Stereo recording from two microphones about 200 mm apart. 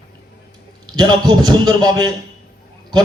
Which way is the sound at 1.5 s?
20° right (ahead or behind).